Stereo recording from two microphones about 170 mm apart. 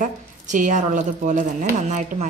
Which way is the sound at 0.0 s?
50° right (ahead or behind).